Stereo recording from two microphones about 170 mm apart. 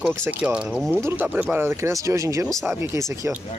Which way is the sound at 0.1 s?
15° right (ahead or behind).